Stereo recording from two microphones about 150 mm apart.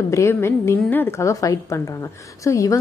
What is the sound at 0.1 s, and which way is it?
A woman's voice, 20° left (ahead or behind).